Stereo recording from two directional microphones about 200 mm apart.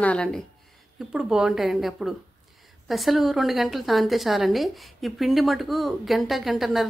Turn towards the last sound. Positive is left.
turn(degrees=0)  # may be behind; listen again after turning